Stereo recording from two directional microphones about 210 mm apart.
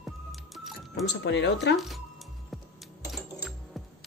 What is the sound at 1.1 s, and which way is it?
Speech, 55° left (ahead or behind).